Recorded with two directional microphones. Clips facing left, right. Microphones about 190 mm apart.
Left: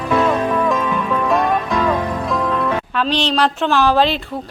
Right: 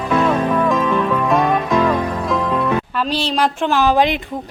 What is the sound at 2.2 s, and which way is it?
Speech, centre (ahead or behind).